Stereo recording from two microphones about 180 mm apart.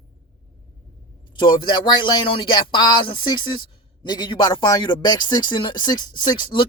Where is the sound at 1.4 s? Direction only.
25° left (ahead or behind).